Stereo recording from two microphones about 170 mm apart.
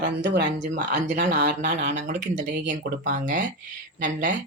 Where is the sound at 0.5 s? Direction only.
45° right (ahead or behind).